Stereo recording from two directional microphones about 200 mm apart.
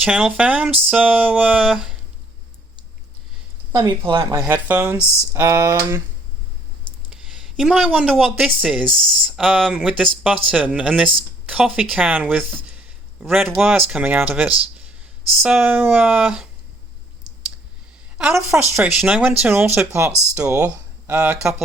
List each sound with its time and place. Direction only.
0.0 s speech: 5° right (ahead or behind)
3.7 s speech: 15° right (ahead or behind)
4.0 s speech: 25° right (ahead or behind)
4.4 s speech: 10° right (ahead or behind)
7.1 s speech: 5° right (ahead or behind)
18.7 s speech: 5° right (ahead or behind)